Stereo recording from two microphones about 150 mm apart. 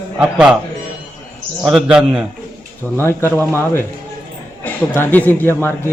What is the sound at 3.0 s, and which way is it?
Speech, 15° left (ahead or behind).